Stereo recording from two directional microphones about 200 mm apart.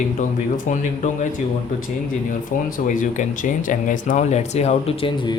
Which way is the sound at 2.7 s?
40° left (ahead or behind).